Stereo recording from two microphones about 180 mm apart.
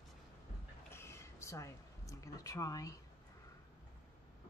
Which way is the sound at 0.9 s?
15° left (ahead or behind).